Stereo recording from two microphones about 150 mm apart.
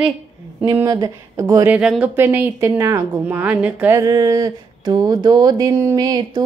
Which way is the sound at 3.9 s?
25° right (ahead or behind).